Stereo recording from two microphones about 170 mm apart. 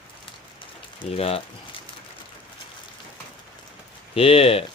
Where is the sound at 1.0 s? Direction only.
35° left (ahead or behind).